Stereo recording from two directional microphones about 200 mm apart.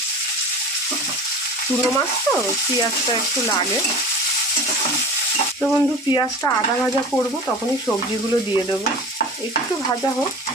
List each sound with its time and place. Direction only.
5.7 s speech: 20° left (ahead or behind)